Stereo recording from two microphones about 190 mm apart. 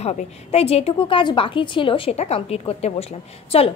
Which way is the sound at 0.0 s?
35° left (ahead or behind).